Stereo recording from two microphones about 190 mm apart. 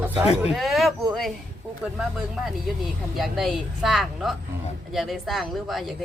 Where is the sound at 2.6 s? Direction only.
Centre (ahead or behind).